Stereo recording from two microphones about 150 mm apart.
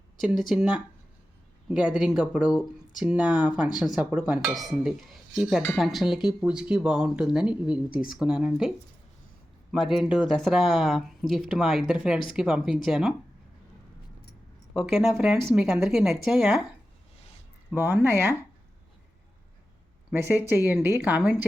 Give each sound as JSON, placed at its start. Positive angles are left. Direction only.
{"t": 0.4, "sound": "speech", "side_deg": -5}
{"t": 9.7, "sound": "speech", "side_deg": 0}
{"t": 14.8, "sound": "speech", "side_deg": -5}
{"t": 17.7, "sound": "speech", "side_deg": -15}
{"t": 20.1, "sound": "speech", "side_deg": -15}